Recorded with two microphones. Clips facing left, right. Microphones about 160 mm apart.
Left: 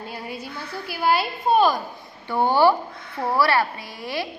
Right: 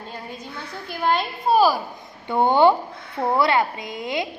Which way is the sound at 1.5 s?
5° right (ahead or behind).